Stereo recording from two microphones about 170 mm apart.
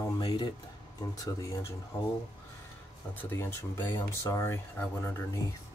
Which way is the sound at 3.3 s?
15° left (ahead or behind).